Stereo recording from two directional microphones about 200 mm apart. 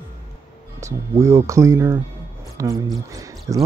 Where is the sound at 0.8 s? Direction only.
15° right (ahead or behind).